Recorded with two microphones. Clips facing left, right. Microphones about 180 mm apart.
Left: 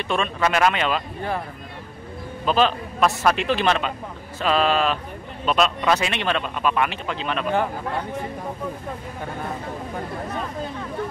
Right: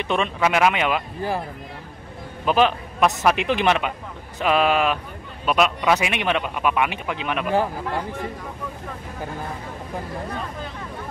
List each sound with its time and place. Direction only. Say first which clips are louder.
0.0 s speech: right 1 dB; 15° right (ahead or behind)
2.4 s speech: right 1 dB; 15° right (ahead or behind)